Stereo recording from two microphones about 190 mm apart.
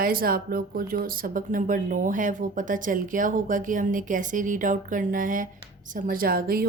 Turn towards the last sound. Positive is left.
turn(degrees=-50)  # may be behind; listen again after turning